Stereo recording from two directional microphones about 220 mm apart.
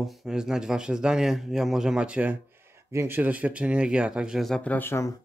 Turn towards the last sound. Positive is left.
turn(degrees=10)  # may be behind; listen again after turning